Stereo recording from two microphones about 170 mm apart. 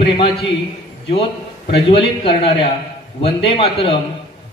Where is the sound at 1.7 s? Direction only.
30° left (ahead or behind).